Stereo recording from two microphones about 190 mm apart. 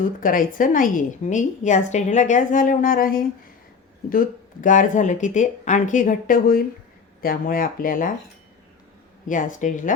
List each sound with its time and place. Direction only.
0.0 s a woman's voice: 45° left (ahead or behind)
9.2 s a woman's voice: 45° left (ahead or behind)